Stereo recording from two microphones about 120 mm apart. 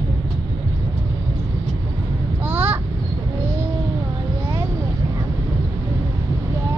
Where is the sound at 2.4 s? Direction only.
15° right (ahead or behind).